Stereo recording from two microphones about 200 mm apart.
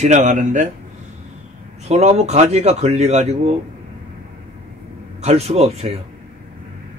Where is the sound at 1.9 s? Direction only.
35° right (ahead or behind).